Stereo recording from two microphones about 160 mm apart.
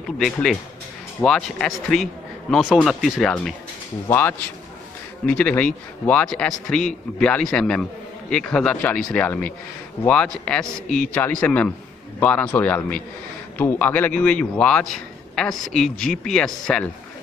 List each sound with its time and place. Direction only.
0.2 s a man's voice: centre (ahead or behind)
4.1 s a man's voice: 15° left (ahead or behind)